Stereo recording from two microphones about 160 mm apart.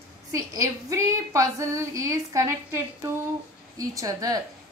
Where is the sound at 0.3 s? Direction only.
20° right (ahead or behind).